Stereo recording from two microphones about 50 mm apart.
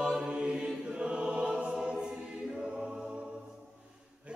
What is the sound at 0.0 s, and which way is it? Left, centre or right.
Choir, centre.